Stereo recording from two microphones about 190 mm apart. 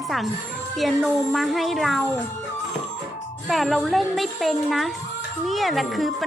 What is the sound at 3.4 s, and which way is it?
Speech, centre (ahead or behind).